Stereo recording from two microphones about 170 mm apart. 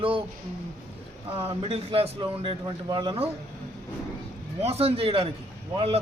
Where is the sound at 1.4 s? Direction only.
35° right (ahead or behind).